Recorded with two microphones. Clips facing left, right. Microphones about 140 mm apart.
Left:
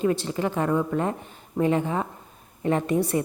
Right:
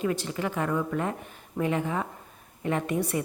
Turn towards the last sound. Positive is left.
turn(degrees=35)  # may be behind; listen again after turning